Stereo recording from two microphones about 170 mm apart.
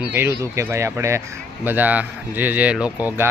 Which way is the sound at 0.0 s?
10° right (ahead or behind).